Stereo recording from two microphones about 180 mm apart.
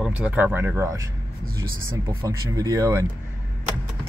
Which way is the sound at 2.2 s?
20° right (ahead or behind).